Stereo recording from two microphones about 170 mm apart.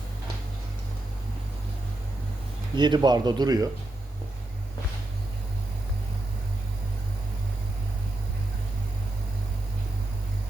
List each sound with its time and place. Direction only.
2.7 s a man's voice: 25° right (ahead or behind)